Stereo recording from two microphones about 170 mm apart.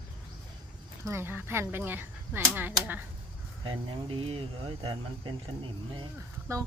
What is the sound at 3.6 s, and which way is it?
Speech, 30° right (ahead or behind).